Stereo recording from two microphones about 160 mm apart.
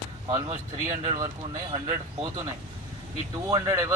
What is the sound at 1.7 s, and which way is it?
Speech, 35° right (ahead or behind).